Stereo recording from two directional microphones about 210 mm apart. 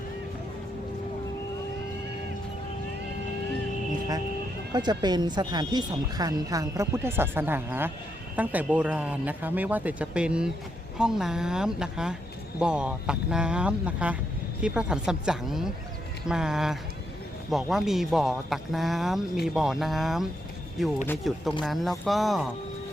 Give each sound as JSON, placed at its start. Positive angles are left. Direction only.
{"t": 4.7, "sound": "speech", "side_deg": -20}